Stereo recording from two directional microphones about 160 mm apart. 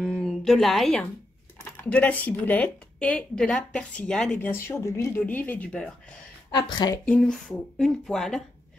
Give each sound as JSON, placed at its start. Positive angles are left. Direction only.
{"t": 0.0, "sound": "a sound", "side_deg": 0}
{"t": 1.6, "sound": "speech", "side_deg": 10}
{"t": 6.5, "sound": "a woman's voice", "side_deg": 25}
{"t": 7.1, "sound": "speech", "side_deg": 5}